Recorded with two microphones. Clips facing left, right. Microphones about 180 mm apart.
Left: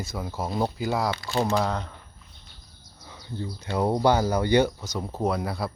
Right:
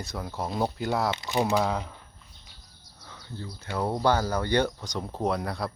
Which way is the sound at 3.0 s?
15° left (ahead or behind).